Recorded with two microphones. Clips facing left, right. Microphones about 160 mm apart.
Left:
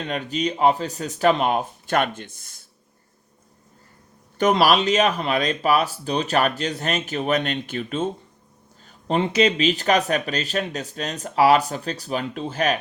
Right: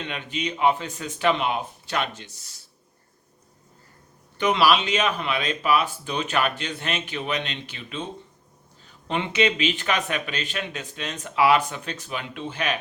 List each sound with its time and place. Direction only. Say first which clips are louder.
0.0 s speech: left 5 dB; 40° left (ahead or behind)
4.4 s speech: left 3 dB; 45° left (ahead or behind)